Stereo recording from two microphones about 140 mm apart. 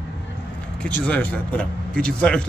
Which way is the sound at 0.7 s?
10° left (ahead or behind).